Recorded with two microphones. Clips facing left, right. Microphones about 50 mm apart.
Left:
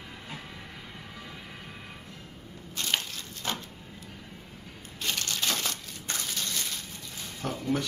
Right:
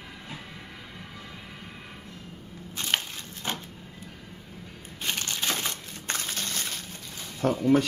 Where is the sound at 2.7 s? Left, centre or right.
Right.